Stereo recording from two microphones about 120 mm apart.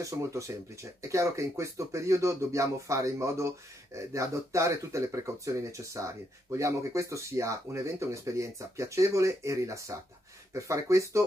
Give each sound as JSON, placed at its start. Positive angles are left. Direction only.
{"t": 0.0, "sound": "speech", "side_deg": -25}